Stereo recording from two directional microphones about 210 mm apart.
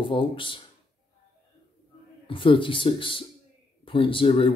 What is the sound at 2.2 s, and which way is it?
Speech, 25° left (ahead or behind).